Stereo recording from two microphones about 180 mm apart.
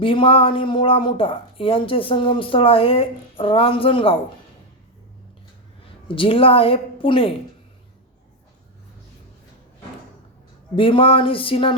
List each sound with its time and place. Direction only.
0.0 s speech: 30° left (ahead or behind)
6.1 s a woman's voice: 30° left (ahead or behind)
10.8 s speech: 30° left (ahead or behind)